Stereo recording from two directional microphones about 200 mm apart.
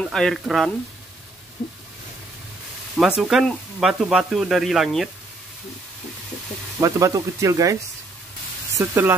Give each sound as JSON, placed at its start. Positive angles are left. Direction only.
{"t": 0.0, "sound": "speech", "side_deg": 0}
{"t": 3.0, "sound": "speech", "side_deg": 0}
{"t": 6.8, "sound": "speech", "side_deg": -15}
{"t": 8.7, "sound": "speech", "side_deg": -10}